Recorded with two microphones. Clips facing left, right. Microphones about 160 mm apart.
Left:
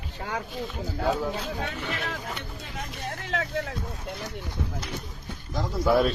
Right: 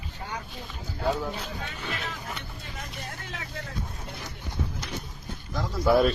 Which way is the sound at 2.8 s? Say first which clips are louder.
Left 5 dB; 65° left (ahead or behind).